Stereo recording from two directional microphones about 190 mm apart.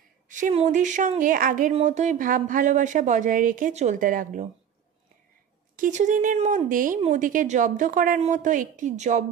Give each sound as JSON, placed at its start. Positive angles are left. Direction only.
{"t": 0.3, "sound": "a woman's voice", "side_deg": -40}
{"t": 5.8, "sound": "a woman's voice", "side_deg": -40}